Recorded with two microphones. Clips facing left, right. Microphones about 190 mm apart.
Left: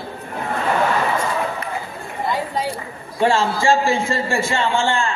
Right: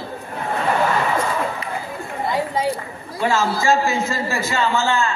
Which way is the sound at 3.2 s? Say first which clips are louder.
Left 2 dB; 30° left (ahead or behind).